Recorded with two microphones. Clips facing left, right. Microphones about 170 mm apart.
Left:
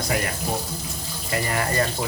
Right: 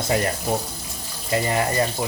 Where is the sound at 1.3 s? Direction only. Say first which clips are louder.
Right 3 dB; 25° right (ahead or behind).